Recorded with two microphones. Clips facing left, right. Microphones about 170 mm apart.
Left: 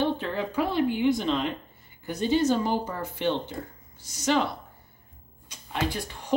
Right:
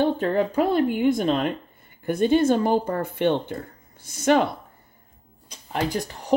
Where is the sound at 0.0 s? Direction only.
50° right (ahead or behind).